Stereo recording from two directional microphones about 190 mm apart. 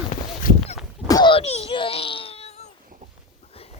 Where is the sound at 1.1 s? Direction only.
25° left (ahead or behind).